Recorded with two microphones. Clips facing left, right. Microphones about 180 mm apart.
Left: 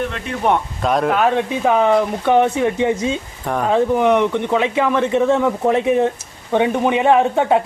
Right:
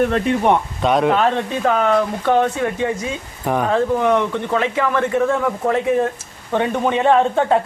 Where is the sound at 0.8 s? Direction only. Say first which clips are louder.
Right 1 dB; centre (ahead or behind); by 3.2 s 25° left (ahead or behind).